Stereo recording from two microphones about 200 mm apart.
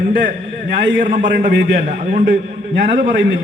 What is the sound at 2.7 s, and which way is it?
Speech, 60° right (ahead or behind).